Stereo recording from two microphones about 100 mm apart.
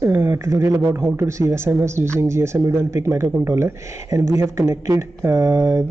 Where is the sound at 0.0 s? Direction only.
20° right (ahead or behind).